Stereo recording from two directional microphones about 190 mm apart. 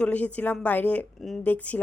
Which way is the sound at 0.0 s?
5° left (ahead or behind).